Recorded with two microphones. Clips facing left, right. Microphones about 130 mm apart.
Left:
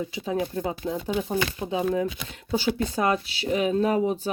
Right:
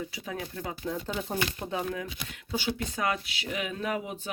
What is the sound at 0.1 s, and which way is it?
Speech, 25° left (ahead or behind).